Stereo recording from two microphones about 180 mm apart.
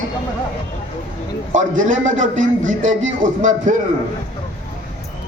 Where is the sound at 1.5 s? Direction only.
45° right (ahead or behind).